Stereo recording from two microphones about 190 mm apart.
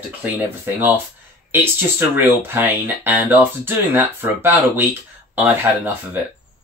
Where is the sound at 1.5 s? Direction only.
10° right (ahead or behind).